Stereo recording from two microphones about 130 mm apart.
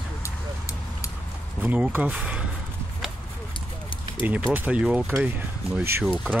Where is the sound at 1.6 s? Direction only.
10° right (ahead or behind).